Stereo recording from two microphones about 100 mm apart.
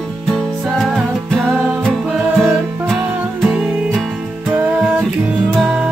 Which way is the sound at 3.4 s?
5° right (ahead or behind).